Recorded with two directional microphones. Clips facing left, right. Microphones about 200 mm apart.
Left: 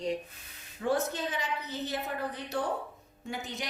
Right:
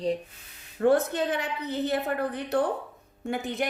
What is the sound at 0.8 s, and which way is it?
A woman's voice, 60° right (ahead or behind).